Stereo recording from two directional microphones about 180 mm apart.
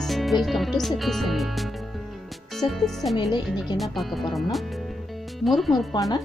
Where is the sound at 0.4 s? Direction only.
Centre (ahead or behind).